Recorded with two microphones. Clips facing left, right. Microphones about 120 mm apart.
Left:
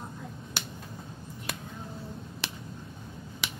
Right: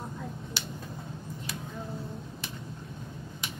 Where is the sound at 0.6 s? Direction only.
55° left (ahead or behind).